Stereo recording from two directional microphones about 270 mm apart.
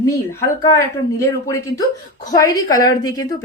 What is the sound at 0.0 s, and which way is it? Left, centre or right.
Speech, centre.